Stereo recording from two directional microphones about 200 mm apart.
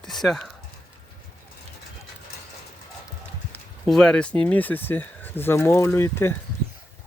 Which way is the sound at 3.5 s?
5° left (ahead or behind).